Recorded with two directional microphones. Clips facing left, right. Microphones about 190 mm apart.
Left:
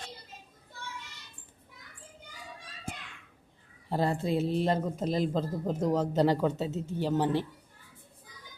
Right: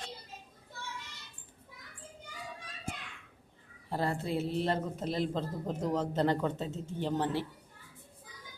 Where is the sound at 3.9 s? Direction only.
15° left (ahead or behind).